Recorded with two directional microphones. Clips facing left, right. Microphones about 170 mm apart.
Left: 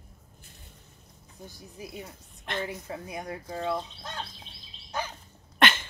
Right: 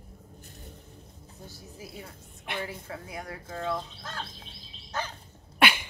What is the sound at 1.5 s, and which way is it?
Speech, 15° left (ahead or behind).